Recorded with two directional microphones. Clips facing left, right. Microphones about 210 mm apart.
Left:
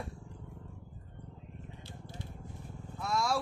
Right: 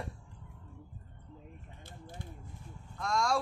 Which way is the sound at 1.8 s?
50° right (ahead or behind).